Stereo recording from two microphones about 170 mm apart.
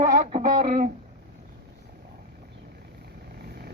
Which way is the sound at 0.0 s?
45° right (ahead or behind).